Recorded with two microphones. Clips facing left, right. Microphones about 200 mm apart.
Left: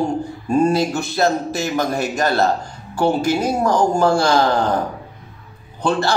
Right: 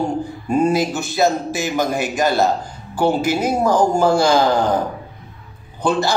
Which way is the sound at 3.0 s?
20° right (ahead or behind).